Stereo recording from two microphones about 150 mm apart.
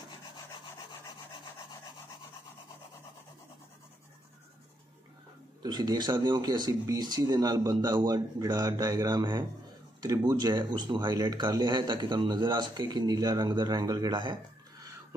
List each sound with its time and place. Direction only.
5.6 s speech: 25° right (ahead or behind)